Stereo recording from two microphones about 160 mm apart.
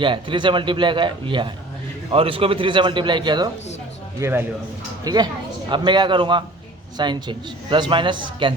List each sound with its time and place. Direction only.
0.0 s a man's voice: 30° right (ahead or behind)
4.2 s a man's voice: 15° right (ahead or behind)
5.0 s a man's voice: 25° right (ahead or behind)